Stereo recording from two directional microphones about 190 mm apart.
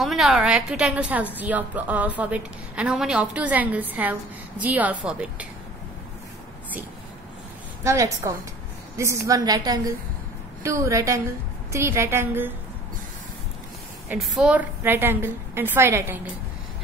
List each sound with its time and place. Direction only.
0.0 s a woman's voice: centre (ahead or behind)
7.8 s a woman's voice: 15° right (ahead or behind)
14.0 s a woman's voice: centre (ahead or behind)